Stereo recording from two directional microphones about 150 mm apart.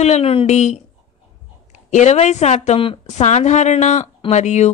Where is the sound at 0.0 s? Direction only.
45° left (ahead or behind).